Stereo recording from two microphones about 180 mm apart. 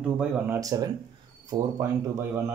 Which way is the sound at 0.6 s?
20° right (ahead or behind).